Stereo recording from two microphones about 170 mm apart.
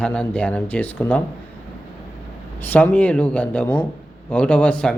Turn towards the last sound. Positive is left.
turn(degrees=5)  # may be behind; listen again after turning